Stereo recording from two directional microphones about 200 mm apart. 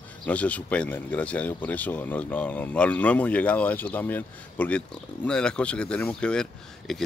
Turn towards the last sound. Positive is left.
turn(degrees=5)  # may be behind; listen again after turning